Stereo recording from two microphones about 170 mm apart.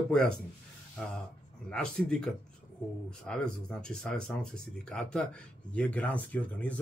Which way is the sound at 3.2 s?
5° left (ahead or behind).